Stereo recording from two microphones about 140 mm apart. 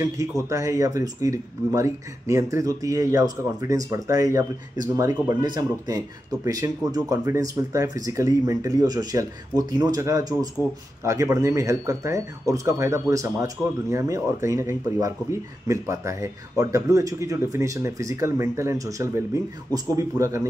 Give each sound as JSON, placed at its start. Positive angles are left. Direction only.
{"t": 0.0, "sound": "speech", "side_deg": -20}